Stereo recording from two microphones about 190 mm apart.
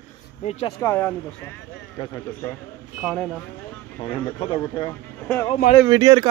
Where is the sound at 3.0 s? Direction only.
Centre (ahead or behind).